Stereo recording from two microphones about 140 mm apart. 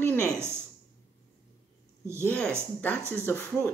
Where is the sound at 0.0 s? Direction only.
10° left (ahead or behind).